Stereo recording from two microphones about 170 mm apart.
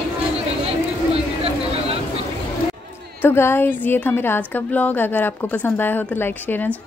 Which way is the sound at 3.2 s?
15° left (ahead or behind).